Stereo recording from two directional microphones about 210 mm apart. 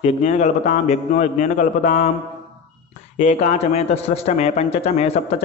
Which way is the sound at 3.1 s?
35° left (ahead or behind).